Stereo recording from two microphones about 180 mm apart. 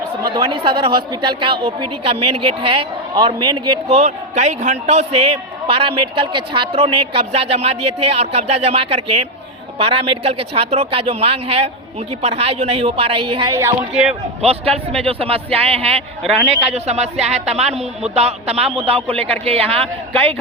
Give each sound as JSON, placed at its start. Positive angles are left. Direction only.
{"t": 0.3, "sound": "a woman's voice", "side_deg": -25}
{"t": 3.8, "sound": "speech", "side_deg": -40}
{"t": 13.5, "sound": "speech", "side_deg": -15}
{"t": 14.4, "sound": "speech", "side_deg": -35}